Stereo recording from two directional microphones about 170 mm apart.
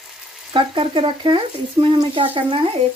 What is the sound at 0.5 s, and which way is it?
Speech, 30° right (ahead or behind).